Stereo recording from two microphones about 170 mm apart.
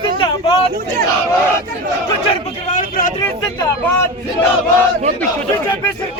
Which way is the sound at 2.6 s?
55° left (ahead or behind).